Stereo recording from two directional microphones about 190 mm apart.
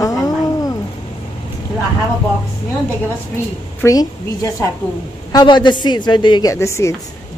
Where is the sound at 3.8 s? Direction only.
15° left (ahead or behind).